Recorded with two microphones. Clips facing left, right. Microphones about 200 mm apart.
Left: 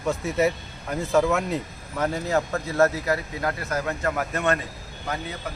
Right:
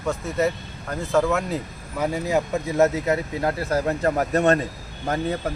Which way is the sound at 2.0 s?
15° right (ahead or behind).